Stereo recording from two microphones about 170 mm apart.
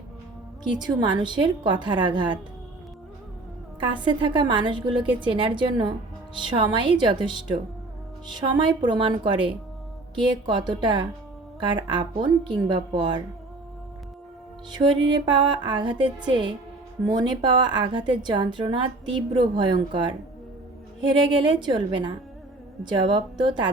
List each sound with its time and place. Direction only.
0.7 s a woman's voice: 25° right (ahead or behind)
3.8 s a woman's voice: 25° right (ahead or behind)
14.7 s a woman's voice: 25° right (ahead or behind)
21.2 s a woman's voice: 25° right (ahead or behind)